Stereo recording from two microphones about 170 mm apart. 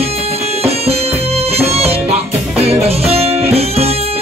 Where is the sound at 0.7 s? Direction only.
35° right (ahead or behind).